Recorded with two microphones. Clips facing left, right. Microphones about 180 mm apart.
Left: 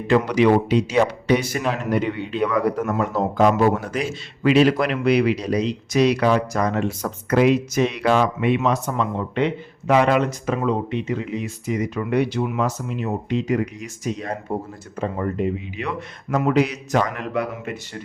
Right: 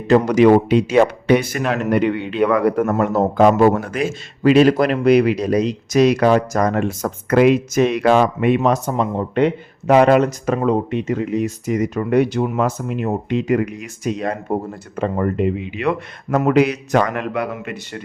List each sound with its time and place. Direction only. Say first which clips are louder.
0.1 s speech: right 5 dB; 45° right (ahead or behind)
8.9 s a man's voice: right 4 dB; 35° right (ahead or behind); by 17.4 s 65° right (ahead or behind)